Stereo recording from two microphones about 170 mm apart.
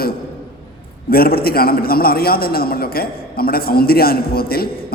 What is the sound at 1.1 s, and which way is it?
A man's voice, 60° left (ahead or behind).